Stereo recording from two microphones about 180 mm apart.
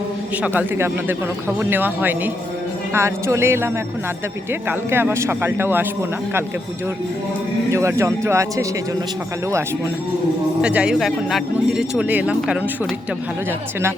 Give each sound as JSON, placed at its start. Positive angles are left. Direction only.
{"t": 0.4, "sound": "speech", "side_deg": -10}
{"t": 4.7, "sound": "speech", "side_deg": -10}
{"t": 7.7, "sound": "speech", "side_deg": -15}
{"t": 10.6, "sound": "speech", "side_deg": -5}